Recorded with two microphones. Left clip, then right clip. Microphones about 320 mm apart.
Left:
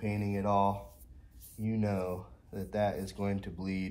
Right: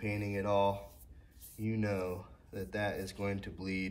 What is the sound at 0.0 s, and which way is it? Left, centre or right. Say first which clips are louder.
Speech: left 2 dB; centre.